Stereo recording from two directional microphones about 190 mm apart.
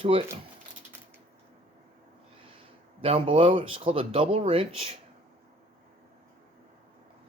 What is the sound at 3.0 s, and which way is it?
Speech, 30° right (ahead or behind).